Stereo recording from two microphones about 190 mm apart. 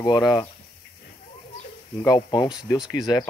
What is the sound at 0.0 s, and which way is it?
Speech, 20° left (ahead or behind).